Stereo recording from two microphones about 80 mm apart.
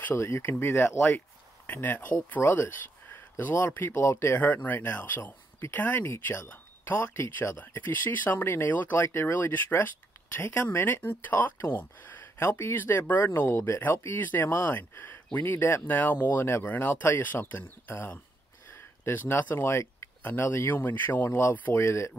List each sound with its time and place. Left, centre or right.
0.1 s speech: left
6.5 s speech: left
18.8 s a sound: left
19.5 s speech: left